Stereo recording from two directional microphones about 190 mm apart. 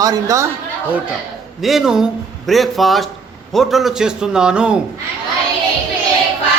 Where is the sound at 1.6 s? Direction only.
Centre (ahead or behind).